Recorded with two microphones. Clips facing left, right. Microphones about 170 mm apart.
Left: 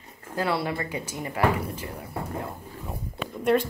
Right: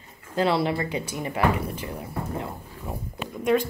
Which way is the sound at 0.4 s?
25° right (ahead or behind).